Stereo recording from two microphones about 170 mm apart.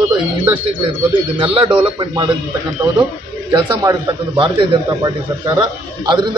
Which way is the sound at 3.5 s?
25° right (ahead or behind).